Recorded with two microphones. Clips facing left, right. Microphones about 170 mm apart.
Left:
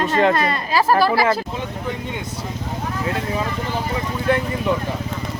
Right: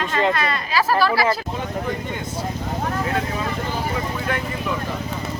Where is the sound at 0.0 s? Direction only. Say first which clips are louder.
Left 4 dB; 45° left (ahead or behind).